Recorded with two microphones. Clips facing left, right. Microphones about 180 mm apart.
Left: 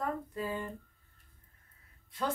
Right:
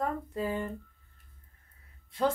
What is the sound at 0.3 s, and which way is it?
Speech, 25° right (ahead or behind).